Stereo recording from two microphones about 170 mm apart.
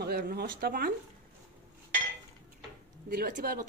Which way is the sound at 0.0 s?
65° right (ahead or behind).